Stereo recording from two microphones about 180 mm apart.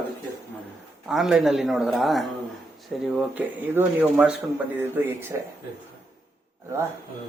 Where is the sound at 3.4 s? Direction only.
10° right (ahead or behind).